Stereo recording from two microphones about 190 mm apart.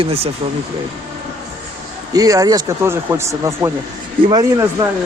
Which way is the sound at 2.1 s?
20° right (ahead or behind).